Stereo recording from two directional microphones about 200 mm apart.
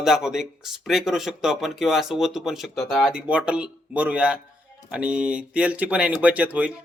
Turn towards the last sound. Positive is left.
turn(degrees=-5)  # may be behind; listen again after turning